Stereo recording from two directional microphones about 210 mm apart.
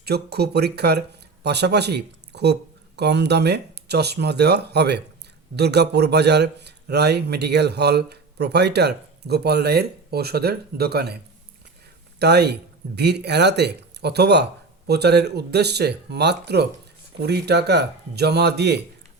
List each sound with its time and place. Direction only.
0.0 s a man's voice: 50° right (ahead or behind)
12.2 s a man's voice: 50° right (ahead or behind)